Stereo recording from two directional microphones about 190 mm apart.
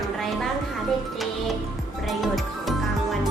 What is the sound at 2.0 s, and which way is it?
Music, centre (ahead or behind).